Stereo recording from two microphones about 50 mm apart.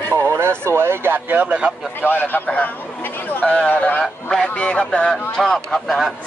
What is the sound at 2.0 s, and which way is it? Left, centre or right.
Speech, left.